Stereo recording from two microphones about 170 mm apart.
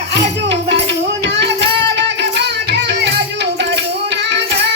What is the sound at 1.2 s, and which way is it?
Child singing, 90° right.